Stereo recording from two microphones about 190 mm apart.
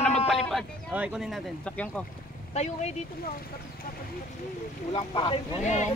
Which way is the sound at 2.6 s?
35° left (ahead or behind).